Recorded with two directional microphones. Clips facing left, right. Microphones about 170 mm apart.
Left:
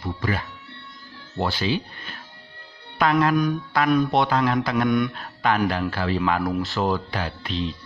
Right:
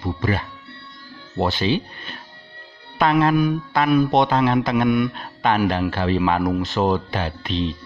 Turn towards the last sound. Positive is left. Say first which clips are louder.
# right 4 dB
turn(degrees=-20)  # may be behind; listen again after turning